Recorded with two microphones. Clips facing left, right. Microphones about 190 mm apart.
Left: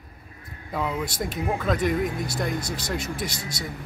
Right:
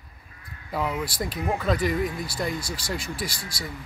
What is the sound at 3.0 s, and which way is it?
Speech, 45° left (ahead or behind).